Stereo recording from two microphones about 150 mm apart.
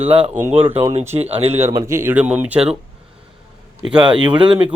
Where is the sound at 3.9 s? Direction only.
30° right (ahead or behind).